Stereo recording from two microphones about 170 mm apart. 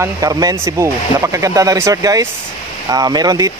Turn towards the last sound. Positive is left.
turn(degrees=-20)  # may be behind; listen again after turning